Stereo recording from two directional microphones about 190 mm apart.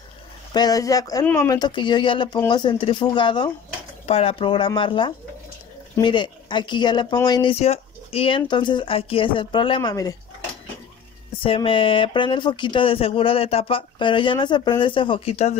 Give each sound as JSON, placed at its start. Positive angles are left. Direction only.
{"t": 0.5, "sound": "speech", "side_deg": 20}
{"t": 7.5, "sound": "speech", "side_deg": 35}
{"t": 11.4, "sound": "speech", "side_deg": 25}